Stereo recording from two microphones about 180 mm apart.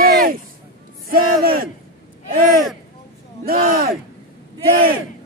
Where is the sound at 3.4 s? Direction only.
55° right (ahead or behind).